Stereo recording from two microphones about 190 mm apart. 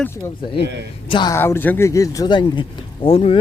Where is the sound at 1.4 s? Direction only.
10° left (ahead or behind).